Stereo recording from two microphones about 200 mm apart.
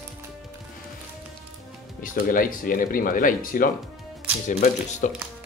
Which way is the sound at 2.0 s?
45° left (ahead or behind).